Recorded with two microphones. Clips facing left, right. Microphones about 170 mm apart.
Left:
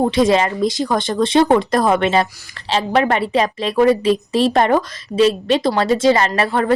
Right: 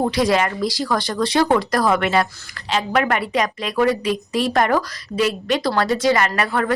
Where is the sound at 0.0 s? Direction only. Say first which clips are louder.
Left 4 dB; 25° left (ahead or behind).